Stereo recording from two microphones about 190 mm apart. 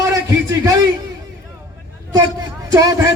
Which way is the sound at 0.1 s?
15° right (ahead or behind).